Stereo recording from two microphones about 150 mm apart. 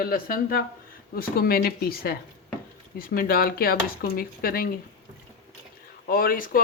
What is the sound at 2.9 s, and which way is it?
Speech, 75° left (ahead or behind).